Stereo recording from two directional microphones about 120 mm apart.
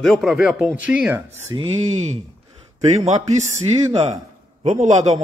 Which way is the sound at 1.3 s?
65° right (ahead or behind).